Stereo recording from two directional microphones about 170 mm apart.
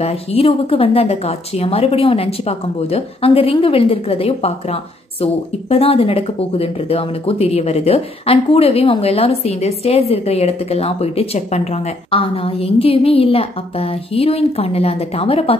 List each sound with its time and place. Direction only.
0.0 s speech: 35° left (ahead or behind)